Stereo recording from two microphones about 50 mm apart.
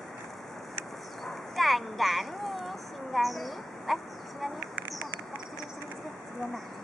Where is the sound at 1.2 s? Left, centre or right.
Centre.